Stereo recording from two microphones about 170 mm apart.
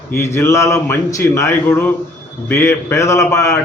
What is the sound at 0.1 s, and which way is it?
A man's voice, 15° left (ahead or behind).